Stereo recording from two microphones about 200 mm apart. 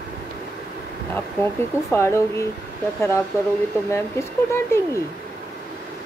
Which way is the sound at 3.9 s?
15° left (ahead or behind).